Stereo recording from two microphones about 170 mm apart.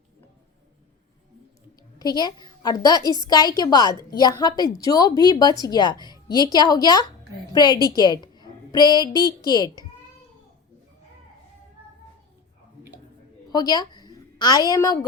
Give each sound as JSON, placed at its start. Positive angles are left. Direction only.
{"t": 2.0, "sound": "a woman's voice", "side_deg": 25}
{"t": 8.2, "sound": "a sound", "side_deg": 25}
{"t": 9.0, "sound": "speech", "side_deg": -20}
{"t": 13.5, "sound": "a woman's voice", "side_deg": 25}